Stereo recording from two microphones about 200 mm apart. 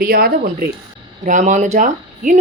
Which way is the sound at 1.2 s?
40° right (ahead or behind).